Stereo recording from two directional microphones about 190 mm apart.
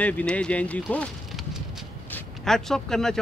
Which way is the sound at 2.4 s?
Centre (ahead or behind).